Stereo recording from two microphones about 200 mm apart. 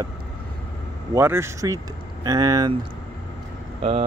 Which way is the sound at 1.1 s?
10° right (ahead or behind).